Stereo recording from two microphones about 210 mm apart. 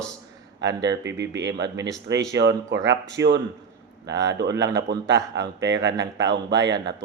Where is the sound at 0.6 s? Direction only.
55° right (ahead or behind).